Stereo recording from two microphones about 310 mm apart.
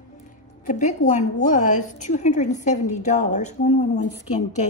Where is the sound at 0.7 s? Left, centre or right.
Left.